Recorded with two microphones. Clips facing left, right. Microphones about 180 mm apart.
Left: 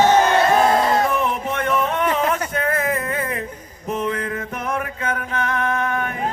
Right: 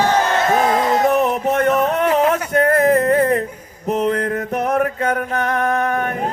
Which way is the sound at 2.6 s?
40° right (ahead or behind).